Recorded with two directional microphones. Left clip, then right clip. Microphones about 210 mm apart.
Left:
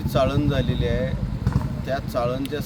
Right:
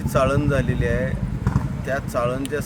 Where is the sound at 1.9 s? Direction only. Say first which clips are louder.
Right 2 dB; 10° right (ahead or behind).